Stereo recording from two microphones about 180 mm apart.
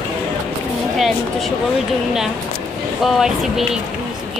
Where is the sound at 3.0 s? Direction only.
Centre (ahead or behind).